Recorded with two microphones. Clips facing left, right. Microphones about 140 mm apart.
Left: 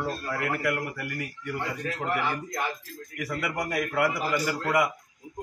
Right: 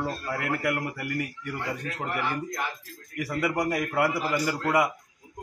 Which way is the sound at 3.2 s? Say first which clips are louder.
Right 4 dB; 30° right (ahead or behind).